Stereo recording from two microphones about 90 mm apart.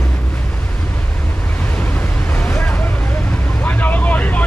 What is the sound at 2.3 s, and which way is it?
Vehicle, 20° left (ahead or behind).